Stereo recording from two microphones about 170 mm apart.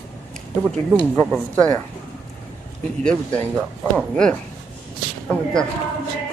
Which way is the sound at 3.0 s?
5° left (ahead or behind).